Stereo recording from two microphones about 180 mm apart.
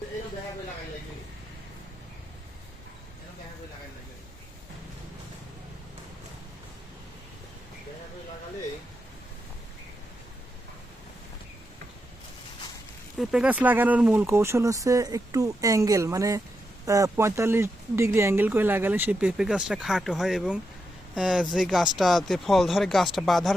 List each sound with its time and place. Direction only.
13.1 s speech: 5° right (ahead or behind)